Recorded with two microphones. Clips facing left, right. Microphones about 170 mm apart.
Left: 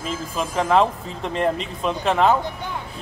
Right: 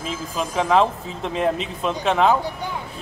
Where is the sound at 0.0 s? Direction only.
Centre (ahead or behind).